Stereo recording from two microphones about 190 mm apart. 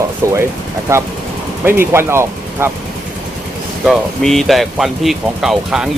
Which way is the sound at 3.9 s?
Centre (ahead or behind).